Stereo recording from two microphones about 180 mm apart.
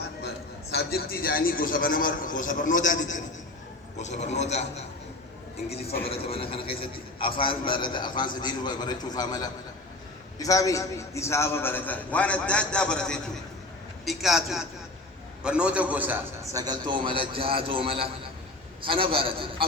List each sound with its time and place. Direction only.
0.7 s a man's voice: 60° left (ahead or behind); by 4.9 s 40° left (ahead or behind)
6.1 s a man's voice: 30° left (ahead or behind); by 19.6 s 30° right (ahead or behind)